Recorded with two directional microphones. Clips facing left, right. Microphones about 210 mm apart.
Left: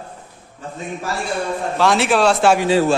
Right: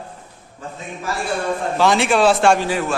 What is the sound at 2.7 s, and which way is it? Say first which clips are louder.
Speech: left 6 dB; 30° left (ahead or behind).